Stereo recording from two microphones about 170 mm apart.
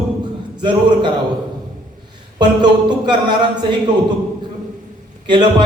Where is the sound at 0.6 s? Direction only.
25° right (ahead or behind).